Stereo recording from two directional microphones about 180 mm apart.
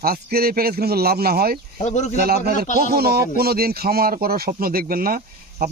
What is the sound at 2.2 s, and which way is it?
Speech, 60° right (ahead or behind).